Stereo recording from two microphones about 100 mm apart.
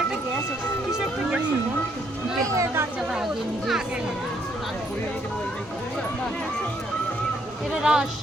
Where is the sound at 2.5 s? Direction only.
30° right (ahead or behind).